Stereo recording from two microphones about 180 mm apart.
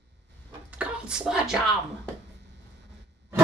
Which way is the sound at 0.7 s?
5° right (ahead or behind).